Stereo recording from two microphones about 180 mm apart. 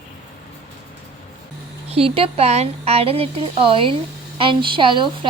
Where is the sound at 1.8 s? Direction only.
35° right (ahead or behind).